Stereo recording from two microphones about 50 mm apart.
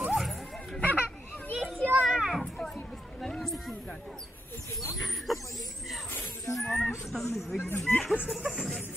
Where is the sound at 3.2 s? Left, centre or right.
Centre.